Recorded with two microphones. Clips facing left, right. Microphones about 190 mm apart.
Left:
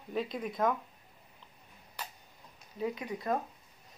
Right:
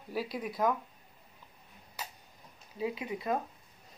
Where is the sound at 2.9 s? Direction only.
25° right (ahead or behind).